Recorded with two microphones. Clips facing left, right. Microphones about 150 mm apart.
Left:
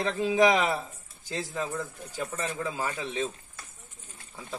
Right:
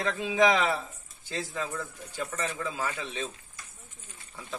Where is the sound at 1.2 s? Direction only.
15° left (ahead or behind).